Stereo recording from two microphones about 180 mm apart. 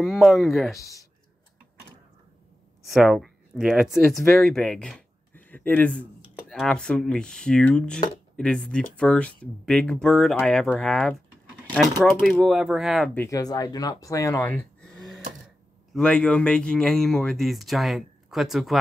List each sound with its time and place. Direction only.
0.0 s speech: centre (ahead or behind)
0.7 s speech: 20° left (ahead or behind)
2.8 s speech: centre (ahead or behind)
13.1 s speech: 10° left (ahead or behind)
14.6 s a sound: 5° left (ahead or behind)
15.9 s speech: 5° left (ahead or behind)